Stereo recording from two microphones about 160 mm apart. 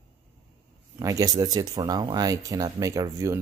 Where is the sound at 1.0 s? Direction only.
20° right (ahead or behind).